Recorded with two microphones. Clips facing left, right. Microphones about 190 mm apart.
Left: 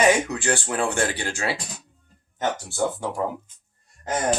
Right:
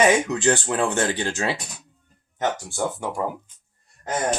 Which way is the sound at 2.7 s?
15° right (ahead or behind).